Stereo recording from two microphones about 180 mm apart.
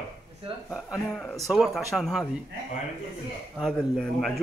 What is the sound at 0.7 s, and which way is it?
A man's voice, 10° left (ahead or behind).